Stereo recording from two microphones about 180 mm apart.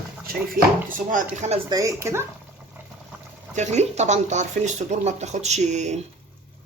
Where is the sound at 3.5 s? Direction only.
40° right (ahead or behind).